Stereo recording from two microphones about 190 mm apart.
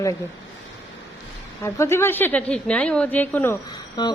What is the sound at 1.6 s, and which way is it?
Speech, 15° left (ahead or behind).